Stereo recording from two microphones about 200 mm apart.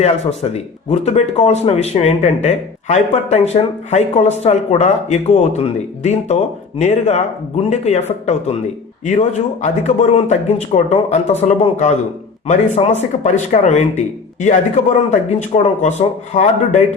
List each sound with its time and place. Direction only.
0.0 s speech: 30° left (ahead or behind)